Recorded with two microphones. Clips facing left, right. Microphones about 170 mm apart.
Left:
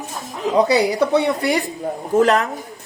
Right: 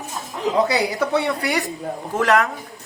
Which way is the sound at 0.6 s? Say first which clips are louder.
Left 5 dB; 20° left (ahead or behind).